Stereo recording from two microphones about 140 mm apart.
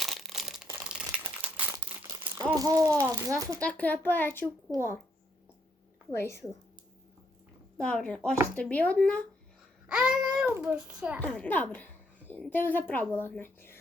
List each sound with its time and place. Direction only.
0.0 s crumpling: centre (ahead or behind)
2.6 s a child's voice: 25° right (ahead or behind)
3.6 s a woman's voice: 10° left (ahead or behind)
6.1 s a woman's voice: 20° left (ahead or behind)
7.8 s a woman's voice: 5° left (ahead or behind)
9.9 s a sound: 5° right (ahead or behind)
10.4 s a child's voice: 15° right (ahead or behind)
11.2 s a woman's voice: 10° left (ahead or behind)